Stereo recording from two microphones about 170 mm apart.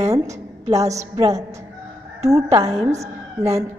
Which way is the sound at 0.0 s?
20° right (ahead or behind).